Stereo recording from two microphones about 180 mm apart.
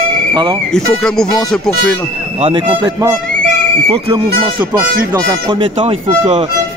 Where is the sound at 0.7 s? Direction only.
5° left (ahead or behind).